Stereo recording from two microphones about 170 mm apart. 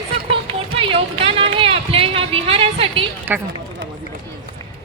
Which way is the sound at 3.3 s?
10° right (ahead or behind).